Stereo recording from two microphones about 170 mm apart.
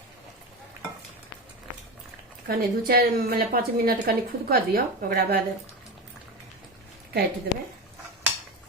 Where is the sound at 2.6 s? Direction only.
60° right (ahead or behind).